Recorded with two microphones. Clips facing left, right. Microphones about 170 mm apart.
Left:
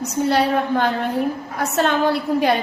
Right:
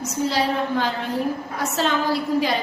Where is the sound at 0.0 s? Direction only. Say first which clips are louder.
Left 4 dB; 60° left (ahead or behind).